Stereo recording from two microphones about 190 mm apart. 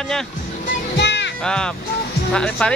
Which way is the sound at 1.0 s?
65° left (ahead or behind).